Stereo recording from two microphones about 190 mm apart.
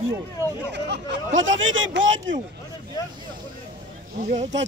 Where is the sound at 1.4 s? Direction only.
85° right.